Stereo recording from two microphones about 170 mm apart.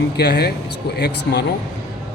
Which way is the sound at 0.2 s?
75° left (ahead or behind).